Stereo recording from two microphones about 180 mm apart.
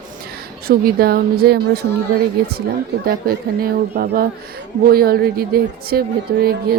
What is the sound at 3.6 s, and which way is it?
Speech, 55° right (ahead or behind).